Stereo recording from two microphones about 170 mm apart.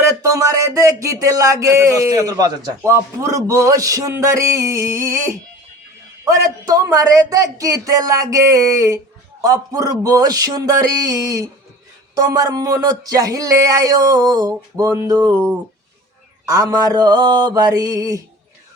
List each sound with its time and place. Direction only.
0.2 s speech: 20° right (ahead or behind)
16.5 s speech: 20° right (ahead or behind)